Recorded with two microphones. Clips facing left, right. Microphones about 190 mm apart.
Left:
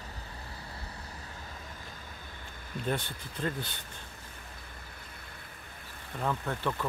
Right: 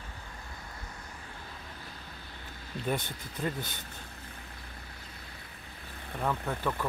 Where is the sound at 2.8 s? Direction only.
10° right (ahead or behind).